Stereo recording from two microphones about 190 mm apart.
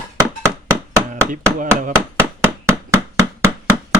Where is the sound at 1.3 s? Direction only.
45° right (ahead or behind).